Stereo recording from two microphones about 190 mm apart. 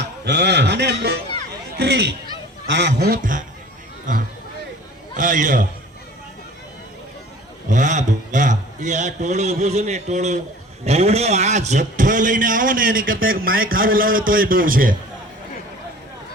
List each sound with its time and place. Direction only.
0.0 s a man's voice: 65° right (ahead or behind)
1.8 s goose: 65° right (ahead or behind)
4.1 s a man's voice: 40° right (ahead or behind)
7.7 s a man's voice: 40° right (ahead or behind)